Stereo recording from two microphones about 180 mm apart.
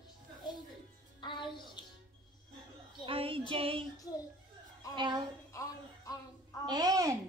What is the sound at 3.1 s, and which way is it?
Female singing, 30° right (ahead or behind).